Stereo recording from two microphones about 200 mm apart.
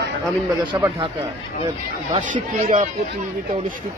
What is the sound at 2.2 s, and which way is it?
Speech, 40° right (ahead or behind).